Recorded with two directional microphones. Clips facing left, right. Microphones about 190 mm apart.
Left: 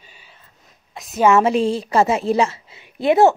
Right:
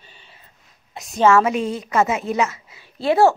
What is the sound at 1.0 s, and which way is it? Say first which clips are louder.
Speech: left 2 dB; centre (ahead or behind).